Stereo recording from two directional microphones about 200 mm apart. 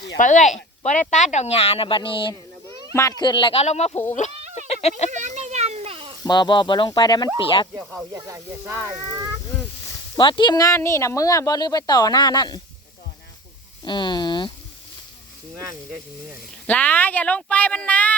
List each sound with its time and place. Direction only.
0.2 s speech: 40° left (ahead or behind)
4.5 s a sound: 35° left (ahead or behind)
5.1 s a sound: 35° right (ahead or behind)
6.2 s speech: 20° left (ahead or behind)
7.7 s speech: 10° right (ahead or behind)
10.2 s speech: 25° left (ahead or behind)
13.8 s speech: 20° left (ahead or behind)
16.6 s speech: 10° left (ahead or behind)